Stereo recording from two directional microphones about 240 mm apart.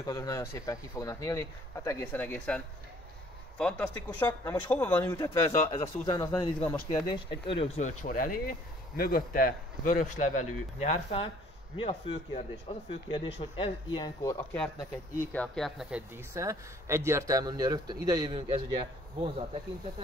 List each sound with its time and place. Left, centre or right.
0.0 s speech: centre
7.4 s speech: left
15.3 s speech: centre
16.3 s a man's voice: centre